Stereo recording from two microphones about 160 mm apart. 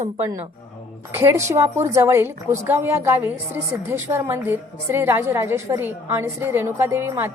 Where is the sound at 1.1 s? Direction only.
15° right (ahead or behind).